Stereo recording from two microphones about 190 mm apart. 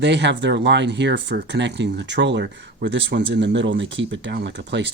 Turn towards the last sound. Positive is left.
turn(degrees=-65)  # may be behind; listen again after turning